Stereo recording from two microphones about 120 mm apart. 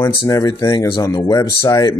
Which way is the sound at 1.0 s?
30° left (ahead or behind).